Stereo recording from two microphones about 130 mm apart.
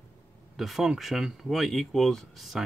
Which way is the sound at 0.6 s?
Centre (ahead or behind).